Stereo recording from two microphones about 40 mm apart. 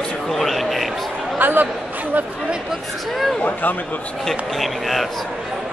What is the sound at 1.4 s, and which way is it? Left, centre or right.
Speech, right.